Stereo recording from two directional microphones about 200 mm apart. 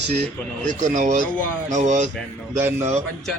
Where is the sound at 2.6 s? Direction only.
10° right (ahead or behind).